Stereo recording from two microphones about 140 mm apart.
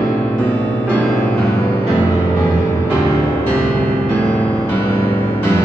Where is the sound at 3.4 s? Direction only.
15° left (ahead or behind).